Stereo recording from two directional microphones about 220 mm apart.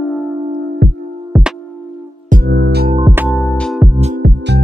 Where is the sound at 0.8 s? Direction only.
50° right (ahead or behind).